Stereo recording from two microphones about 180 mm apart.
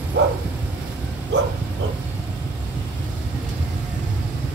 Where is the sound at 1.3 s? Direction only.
75° right (ahead or behind).